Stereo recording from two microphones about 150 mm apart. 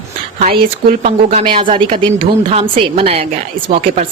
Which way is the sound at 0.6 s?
70° right (ahead or behind).